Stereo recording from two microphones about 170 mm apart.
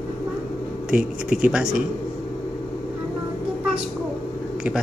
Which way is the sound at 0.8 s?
5° right (ahead or behind).